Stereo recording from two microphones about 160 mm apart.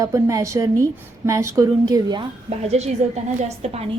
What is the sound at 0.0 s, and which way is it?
A woman's voice, 20° right (ahead or behind).